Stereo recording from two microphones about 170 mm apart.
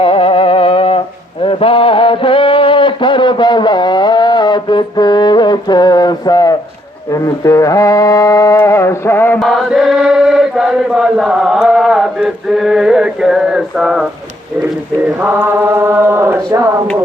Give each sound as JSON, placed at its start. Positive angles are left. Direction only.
{"t": 0.0, "sound": "a sound", "side_deg": 30}
{"t": 7.1, "sound": "music", "side_deg": 20}
{"t": 9.4, "sound": "chant", "side_deg": 0}
{"t": 14.6, "sound": "mantra", "side_deg": -10}